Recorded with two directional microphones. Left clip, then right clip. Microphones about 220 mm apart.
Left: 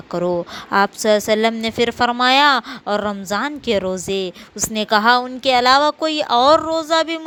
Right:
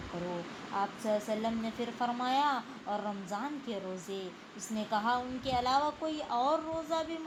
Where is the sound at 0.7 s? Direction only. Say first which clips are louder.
Left 18 dB; 45° left (ahead or behind).